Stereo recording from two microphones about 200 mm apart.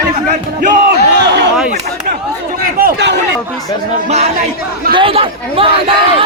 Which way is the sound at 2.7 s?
55° right (ahead or behind).